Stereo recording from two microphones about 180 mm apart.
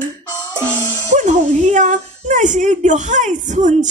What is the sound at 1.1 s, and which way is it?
A woman's voice, 40° right (ahead or behind).